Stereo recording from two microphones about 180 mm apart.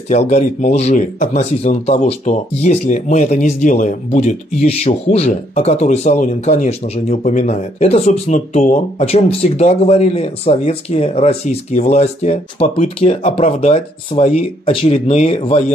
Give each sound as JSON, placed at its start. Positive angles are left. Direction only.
{"t": 0.1, "sound": "speech", "side_deg": 40}